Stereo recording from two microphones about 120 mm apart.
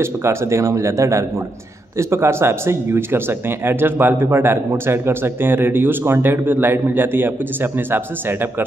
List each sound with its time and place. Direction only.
0.0 s speech: 20° right (ahead or behind)